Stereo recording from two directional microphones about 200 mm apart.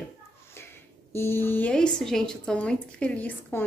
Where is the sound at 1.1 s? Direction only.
10° left (ahead or behind).